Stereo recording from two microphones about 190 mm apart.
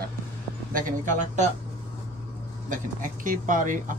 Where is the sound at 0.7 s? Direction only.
45° right (ahead or behind).